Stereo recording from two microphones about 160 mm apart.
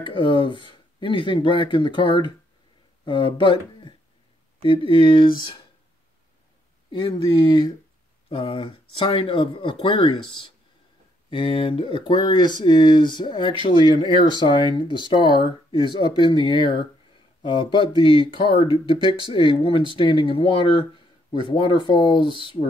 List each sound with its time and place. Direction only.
0.0 s speech: 30° left (ahead or behind)
6.9 s speech: 30° left (ahead or behind)